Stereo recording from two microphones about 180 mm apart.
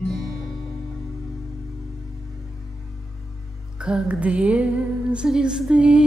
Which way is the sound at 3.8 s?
5° right (ahead or behind).